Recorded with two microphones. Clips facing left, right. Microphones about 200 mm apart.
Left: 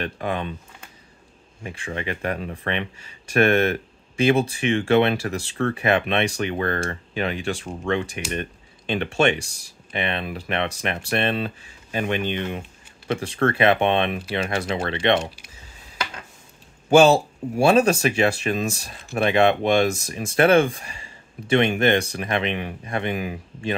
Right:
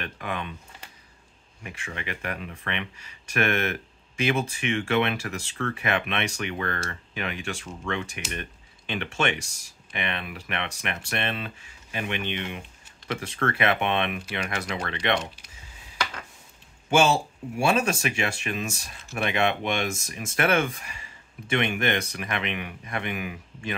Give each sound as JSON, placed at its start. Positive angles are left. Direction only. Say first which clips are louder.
{"t": 0.0, "sound": "speech", "louder": "left 6 dB", "side_deg": 35}
{"t": 1.6, "sound": "speech", "louder": "left 7 dB", "side_deg": 30}
{"t": 16.9, "sound": "speech", "louder": "left 7 dB", "side_deg": 35}